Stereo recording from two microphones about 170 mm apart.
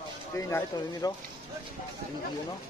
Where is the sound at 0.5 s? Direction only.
15° left (ahead or behind).